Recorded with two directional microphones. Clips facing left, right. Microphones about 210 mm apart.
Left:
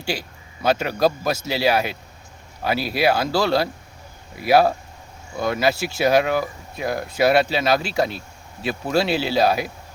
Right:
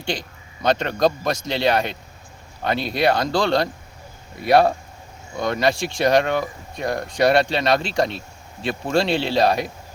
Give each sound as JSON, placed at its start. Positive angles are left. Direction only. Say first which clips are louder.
{"t": 0.0, "sound": "speech", "louder": "even", "side_deg": 5}